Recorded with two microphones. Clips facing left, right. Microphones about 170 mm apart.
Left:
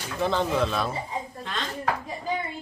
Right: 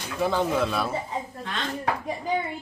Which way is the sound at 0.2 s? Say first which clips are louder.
Right 1 dB; 5° right (ahead or behind).